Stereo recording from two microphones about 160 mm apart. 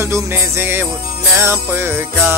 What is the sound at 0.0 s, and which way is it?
Music, 15° right (ahead or behind).